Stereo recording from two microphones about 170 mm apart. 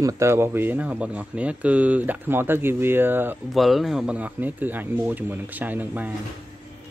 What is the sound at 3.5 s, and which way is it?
Speech, centre (ahead or behind).